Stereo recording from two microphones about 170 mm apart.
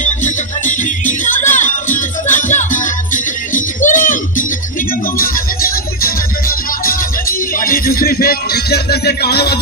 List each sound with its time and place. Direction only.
0.0 s music: 45° left (ahead or behind); by 9.6 s 70° left (ahead or behind)